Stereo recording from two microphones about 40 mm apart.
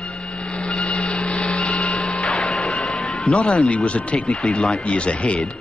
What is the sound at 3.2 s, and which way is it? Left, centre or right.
Speech, left.